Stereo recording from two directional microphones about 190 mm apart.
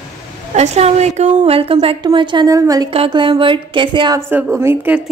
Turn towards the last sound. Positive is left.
turn(degrees=-10)  # may be behind; listen again after turning